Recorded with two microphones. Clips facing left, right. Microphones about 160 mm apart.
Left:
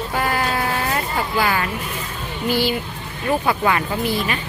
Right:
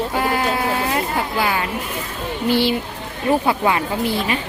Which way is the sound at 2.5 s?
25° right (ahead or behind).